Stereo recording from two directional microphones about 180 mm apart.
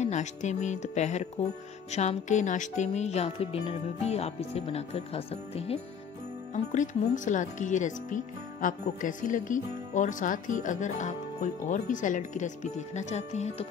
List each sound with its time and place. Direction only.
0.0 s speech: 40° left (ahead or behind)